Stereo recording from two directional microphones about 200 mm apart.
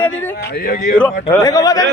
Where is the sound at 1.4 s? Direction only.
20° left (ahead or behind).